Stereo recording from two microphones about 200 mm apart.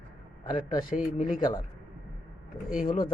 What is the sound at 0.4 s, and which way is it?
Speech, 20° left (ahead or behind).